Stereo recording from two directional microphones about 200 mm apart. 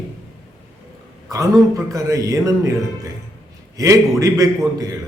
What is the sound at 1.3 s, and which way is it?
A man's voice, 15° right (ahead or behind).